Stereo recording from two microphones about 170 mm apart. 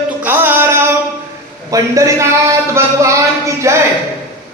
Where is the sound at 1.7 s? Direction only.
20° right (ahead or behind).